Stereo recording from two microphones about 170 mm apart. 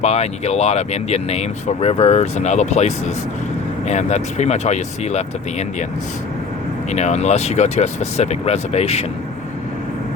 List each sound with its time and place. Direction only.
0.0 s speech: 40° left (ahead or behind)
6.9 s speech: 40° left (ahead or behind)